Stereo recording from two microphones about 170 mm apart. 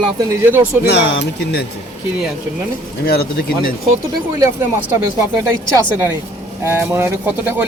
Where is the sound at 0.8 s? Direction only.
80° left.